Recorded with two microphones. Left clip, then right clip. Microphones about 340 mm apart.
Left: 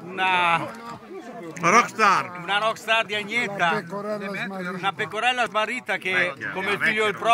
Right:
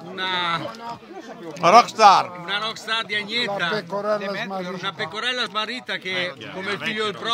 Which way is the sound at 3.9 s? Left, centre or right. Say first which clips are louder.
Right 6 dB; right.